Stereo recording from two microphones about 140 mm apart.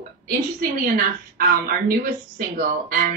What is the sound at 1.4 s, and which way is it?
Speech, 90° right.